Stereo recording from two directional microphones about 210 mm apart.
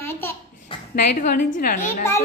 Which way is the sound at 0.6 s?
35° left (ahead or behind).